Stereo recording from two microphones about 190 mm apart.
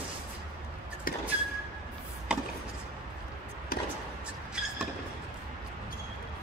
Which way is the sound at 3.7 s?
50° left (ahead or behind).